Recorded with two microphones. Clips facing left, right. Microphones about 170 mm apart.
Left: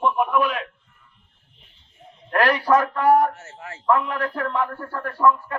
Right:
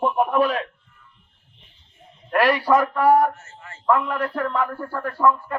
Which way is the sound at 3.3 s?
75° left (ahead or behind).